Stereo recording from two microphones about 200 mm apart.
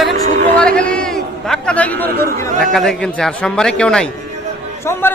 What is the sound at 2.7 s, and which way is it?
Speech, centre (ahead or behind).